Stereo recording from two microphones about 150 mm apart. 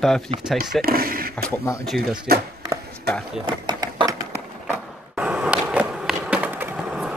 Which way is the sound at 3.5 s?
30° right (ahead or behind).